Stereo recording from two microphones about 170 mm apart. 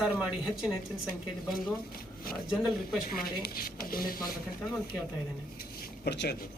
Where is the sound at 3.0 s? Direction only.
60° left (ahead or behind).